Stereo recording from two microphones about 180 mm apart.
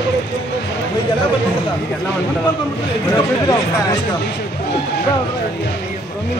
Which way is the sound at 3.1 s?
20° left (ahead or behind).